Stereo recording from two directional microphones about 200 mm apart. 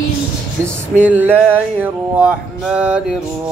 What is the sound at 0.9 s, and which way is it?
Speech, 10° right (ahead or behind).